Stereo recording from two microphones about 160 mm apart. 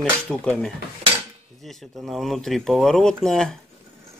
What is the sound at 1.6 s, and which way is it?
Speech, centre (ahead or behind).